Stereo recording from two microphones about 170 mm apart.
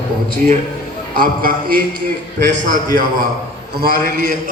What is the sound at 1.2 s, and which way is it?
A man's voice, 55° right (ahead or behind).